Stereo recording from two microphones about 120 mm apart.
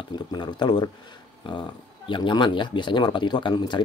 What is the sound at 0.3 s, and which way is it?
Speech, 40° left (ahead or behind).